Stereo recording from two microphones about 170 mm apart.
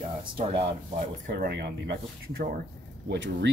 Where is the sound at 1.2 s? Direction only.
65° right (ahead or behind).